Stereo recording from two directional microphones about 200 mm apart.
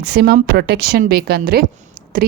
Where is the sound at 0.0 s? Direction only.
50° right (ahead or behind).